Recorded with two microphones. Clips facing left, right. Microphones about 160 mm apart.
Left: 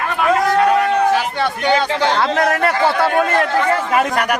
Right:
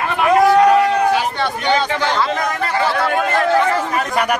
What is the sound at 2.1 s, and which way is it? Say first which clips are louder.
Speech: left 3 dB; 65° left (ahead or behind).